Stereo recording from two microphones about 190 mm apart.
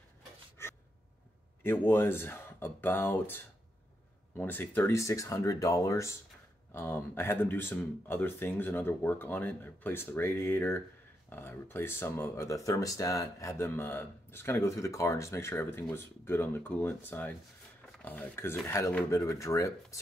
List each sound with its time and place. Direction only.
0.6 s gasp: 15° left (ahead or behind)
1.6 s speech: 10° left (ahead or behind)